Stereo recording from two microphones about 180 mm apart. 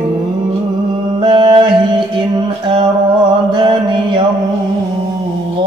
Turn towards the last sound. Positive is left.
turn(degrees=-25)  # may be behind; listen again after turning